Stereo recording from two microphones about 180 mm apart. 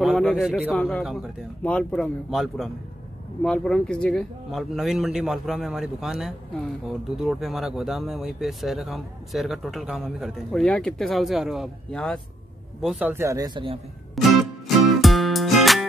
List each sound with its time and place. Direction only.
0.0 s speech: centre (ahead or behind)
0.7 s speech: 5° left (ahead or behind)
12.8 s speech: 10° right (ahead or behind)
14.2 s speech: centre (ahead or behind)
15.0 s music: centre (ahead or behind)